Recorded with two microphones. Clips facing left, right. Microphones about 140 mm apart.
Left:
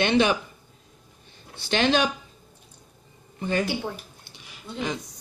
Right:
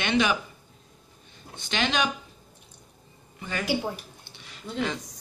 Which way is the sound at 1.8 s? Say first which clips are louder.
Left 5 dB; 30° left (ahead or behind).